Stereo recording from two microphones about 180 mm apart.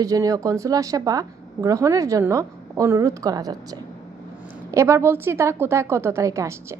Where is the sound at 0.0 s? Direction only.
20° right (ahead or behind).